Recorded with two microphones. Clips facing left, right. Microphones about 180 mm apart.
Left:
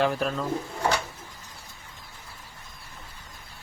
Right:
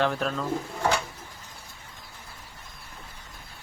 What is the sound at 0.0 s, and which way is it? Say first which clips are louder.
Speech: left 1 dB; 5° left (ahead or behind).